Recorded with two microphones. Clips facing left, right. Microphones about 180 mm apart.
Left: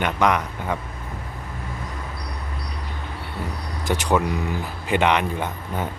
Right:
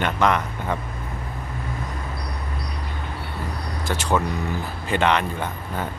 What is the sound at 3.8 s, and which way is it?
Speech, 15° left (ahead or behind).